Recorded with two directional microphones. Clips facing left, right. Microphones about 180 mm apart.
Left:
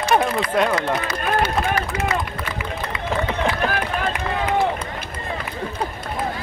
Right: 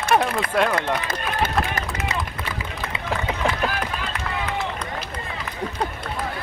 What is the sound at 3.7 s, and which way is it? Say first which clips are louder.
Run: left 5 dB; 55° left (ahead or behind).